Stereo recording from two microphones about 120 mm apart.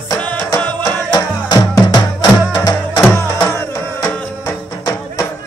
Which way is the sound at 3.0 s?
20° left (ahead or behind).